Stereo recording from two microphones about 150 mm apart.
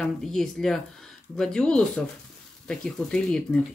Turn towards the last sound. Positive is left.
turn(degrees=5)  # may be behind; listen again after turning